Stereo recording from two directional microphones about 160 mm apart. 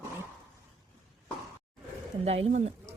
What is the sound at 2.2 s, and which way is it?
Speech, 40° right (ahead or behind).